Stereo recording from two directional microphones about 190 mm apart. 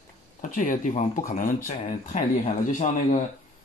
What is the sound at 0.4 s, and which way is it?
Speech, 45° left (ahead or behind).